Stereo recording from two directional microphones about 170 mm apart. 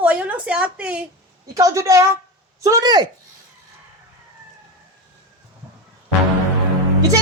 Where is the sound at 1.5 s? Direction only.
20° right (ahead or behind).